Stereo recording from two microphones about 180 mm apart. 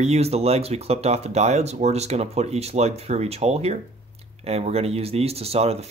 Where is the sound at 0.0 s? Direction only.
35° right (ahead or behind).